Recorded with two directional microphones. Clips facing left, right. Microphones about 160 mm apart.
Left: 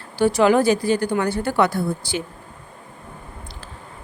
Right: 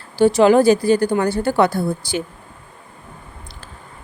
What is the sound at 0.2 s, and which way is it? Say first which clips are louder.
Speech: right 4 dB; 25° right (ahead or behind).